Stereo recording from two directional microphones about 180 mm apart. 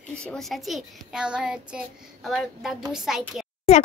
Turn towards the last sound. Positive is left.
turn(degrees=0)  # may be behind; listen again after turning